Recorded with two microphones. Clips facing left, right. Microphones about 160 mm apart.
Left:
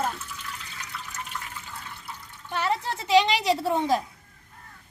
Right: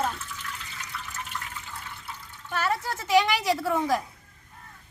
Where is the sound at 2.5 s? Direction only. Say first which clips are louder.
Left 1 dB; 20° left (ahead or behind).